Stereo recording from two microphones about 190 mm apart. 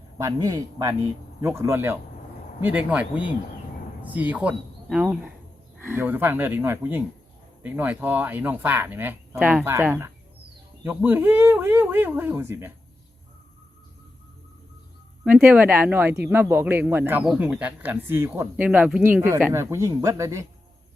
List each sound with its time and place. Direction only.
0.2 s speech: 20° right (ahead or behind)
15.2 s speech: 10° right (ahead or behind)